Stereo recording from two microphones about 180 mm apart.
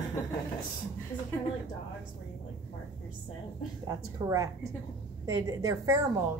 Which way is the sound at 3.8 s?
20° right (ahead or behind).